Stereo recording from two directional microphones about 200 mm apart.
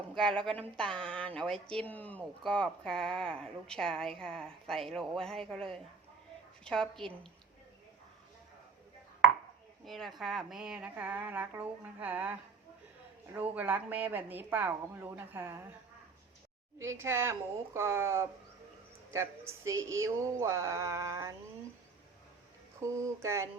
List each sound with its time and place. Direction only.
0.2 s speech: 5° left (ahead or behind)
9.8 s speech: centre (ahead or behind)
16.7 s speech: 15° right (ahead or behind)
22.8 s speech: 15° right (ahead or behind)